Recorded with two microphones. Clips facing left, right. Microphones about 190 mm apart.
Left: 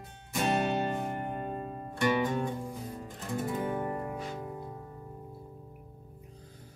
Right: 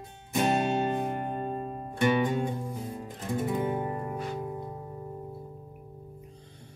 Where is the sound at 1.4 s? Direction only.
30° right (ahead or behind).